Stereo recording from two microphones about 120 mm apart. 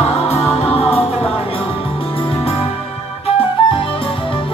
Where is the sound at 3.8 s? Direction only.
50° left (ahead or behind).